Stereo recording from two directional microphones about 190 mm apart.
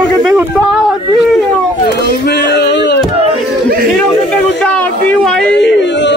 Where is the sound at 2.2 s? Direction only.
60° left (ahead or behind).